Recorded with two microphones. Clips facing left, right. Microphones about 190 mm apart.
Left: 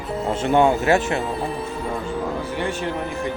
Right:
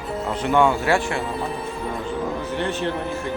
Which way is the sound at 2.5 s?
10° left (ahead or behind).